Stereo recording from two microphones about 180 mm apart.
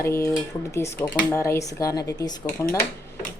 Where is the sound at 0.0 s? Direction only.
15° left (ahead or behind).